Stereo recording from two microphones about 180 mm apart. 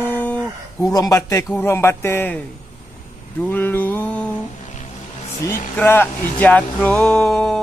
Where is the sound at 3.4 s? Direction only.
10° left (ahead or behind).